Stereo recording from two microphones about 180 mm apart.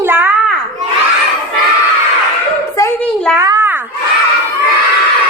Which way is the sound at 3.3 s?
15° right (ahead or behind).